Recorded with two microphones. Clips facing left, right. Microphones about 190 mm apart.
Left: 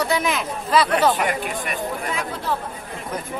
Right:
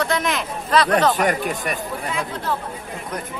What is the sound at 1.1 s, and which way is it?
Speech, 45° right (ahead or behind).